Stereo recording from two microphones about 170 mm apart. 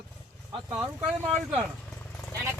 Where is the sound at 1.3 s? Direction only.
5° right (ahead or behind).